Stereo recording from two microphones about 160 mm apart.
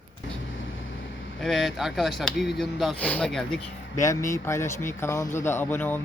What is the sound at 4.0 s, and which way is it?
Speech, 20° left (ahead or behind).